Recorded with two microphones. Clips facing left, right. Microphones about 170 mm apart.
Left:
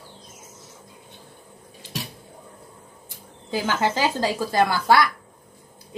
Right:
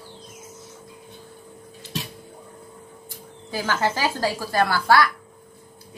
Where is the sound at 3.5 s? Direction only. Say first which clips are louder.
Left 1 dB; 20° left (ahead or behind).